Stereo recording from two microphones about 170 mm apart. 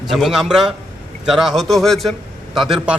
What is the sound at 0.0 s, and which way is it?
A man's voice, centre (ahead or behind).